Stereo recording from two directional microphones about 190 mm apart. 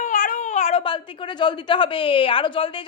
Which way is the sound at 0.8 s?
25° left (ahead or behind).